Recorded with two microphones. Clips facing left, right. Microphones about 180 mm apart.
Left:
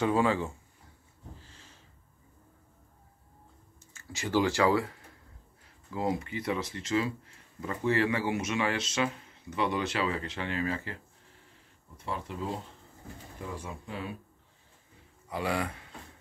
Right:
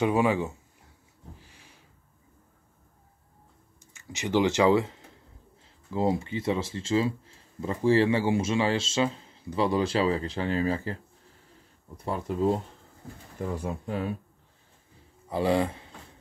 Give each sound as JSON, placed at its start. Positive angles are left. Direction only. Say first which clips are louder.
{"t": 0.0, "sound": "speech", "louder": "right 3 dB", "side_deg": -15}
{"t": 1.4, "sound": "a sound", "louder": "even", "side_deg": -15}
{"t": 3.8, "sound": "speech", "louder": "right 3 dB", "side_deg": -20}
{"t": 12.0, "sound": "speech", "louder": "right 9 dB", "side_deg": -40}
{"t": 15.2, "sound": "speech", "louder": "right 7 dB", "side_deg": -30}